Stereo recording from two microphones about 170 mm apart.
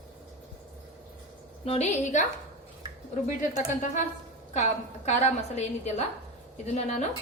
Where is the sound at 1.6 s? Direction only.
40° left (ahead or behind).